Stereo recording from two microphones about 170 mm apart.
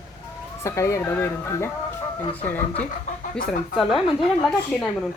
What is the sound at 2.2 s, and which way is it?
Speech, 35° left (ahead or behind).